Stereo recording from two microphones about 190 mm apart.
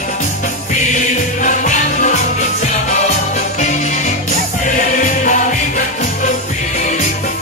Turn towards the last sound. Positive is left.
turn(degrees=40)  # may be behind; listen again after turning